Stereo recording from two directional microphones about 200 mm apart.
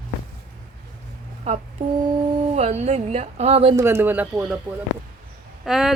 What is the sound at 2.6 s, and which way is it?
A woman's voice, 35° right (ahead or behind).